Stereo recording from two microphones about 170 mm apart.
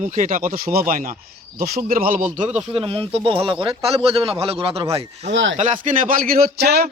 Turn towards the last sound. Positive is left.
turn(degrees=-70)  # may be behind; listen again after turning